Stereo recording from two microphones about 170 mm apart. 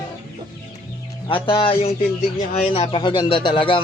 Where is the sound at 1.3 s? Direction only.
30° left (ahead or behind).